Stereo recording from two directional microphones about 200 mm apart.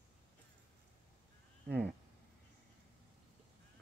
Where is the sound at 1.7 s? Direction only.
5° left (ahead or behind).